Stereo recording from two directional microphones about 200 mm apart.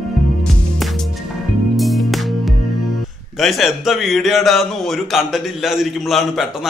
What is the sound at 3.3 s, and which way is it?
Speech, centre (ahead or behind).